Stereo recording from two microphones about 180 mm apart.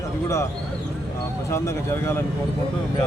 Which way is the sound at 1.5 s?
15° left (ahead or behind).